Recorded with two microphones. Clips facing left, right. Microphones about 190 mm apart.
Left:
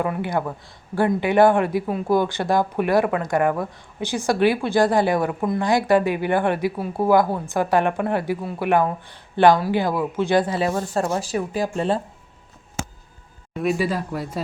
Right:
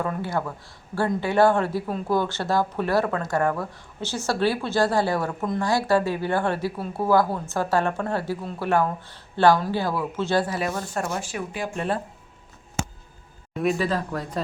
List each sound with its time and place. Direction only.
0.0 s speech: 15° left (ahead or behind); by 11.9 s 30° left (ahead or behind)
13.5 s speech: centre (ahead or behind)
13.7 s speech: 10° left (ahead or behind)